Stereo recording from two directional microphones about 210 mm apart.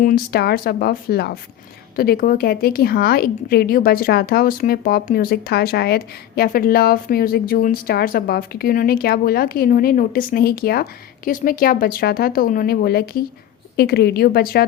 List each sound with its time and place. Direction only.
0.0 s a woman's voice: 45° left (ahead or behind)